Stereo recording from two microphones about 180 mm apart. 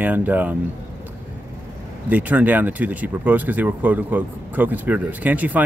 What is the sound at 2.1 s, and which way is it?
Speech, 10° right (ahead or behind).